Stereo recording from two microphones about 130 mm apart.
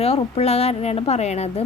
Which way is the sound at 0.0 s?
50° left (ahead or behind).